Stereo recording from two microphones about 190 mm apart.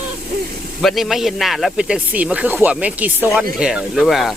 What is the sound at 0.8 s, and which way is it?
Speech, centre (ahead or behind).